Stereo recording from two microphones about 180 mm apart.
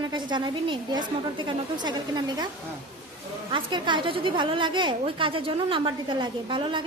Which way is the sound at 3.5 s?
25° right (ahead or behind).